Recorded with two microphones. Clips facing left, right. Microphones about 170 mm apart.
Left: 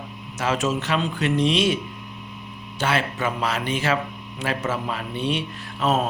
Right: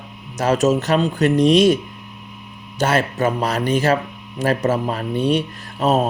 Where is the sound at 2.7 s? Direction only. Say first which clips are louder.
Right 5 dB; 40° right (ahead or behind).